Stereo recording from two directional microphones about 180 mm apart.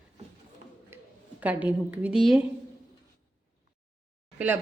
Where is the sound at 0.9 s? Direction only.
10° right (ahead or behind).